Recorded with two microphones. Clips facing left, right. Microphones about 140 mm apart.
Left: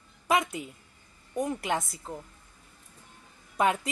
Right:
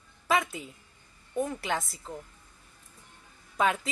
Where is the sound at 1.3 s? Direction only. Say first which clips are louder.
Left 1 dB; 15° left (ahead or behind).